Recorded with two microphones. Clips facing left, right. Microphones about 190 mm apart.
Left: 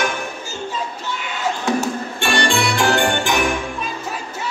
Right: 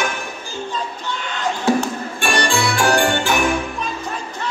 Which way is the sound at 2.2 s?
25° left (ahead or behind).